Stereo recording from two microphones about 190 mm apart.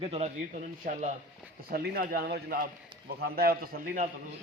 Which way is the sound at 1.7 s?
55° right (ahead or behind).